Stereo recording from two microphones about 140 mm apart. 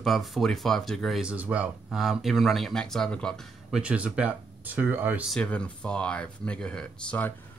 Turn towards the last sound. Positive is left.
turn(degrees=10)  # may be behind; listen again after turning